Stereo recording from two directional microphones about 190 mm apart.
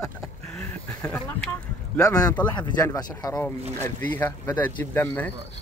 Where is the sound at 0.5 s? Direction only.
5° left (ahead or behind).